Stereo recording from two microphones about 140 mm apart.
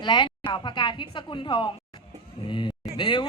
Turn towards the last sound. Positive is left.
turn(degrees=35)  # may be behind; listen again after turning